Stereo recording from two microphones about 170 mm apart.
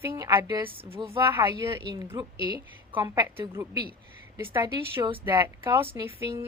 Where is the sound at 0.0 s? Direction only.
20° right (ahead or behind).